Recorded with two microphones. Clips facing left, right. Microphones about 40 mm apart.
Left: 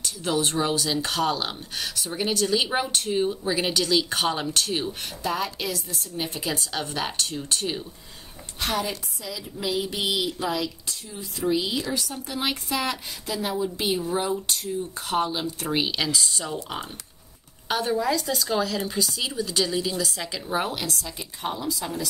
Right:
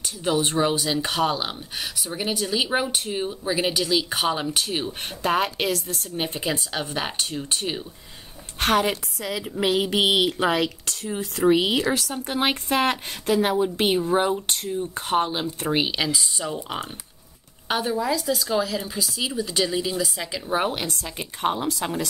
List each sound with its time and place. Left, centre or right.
0.0 s speech: centre
5.2 s a woman's voice: right
6.4 s speech: centre
8.5 s a woman's voice: right
12.3 s a woman's voice: right; by 16.5 s centre
17.8 s speech: centre; by 20.9 s right
21.0 s a woman's voice: right